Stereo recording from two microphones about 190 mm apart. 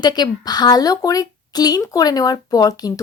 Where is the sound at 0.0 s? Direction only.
20° left (ahead or behind).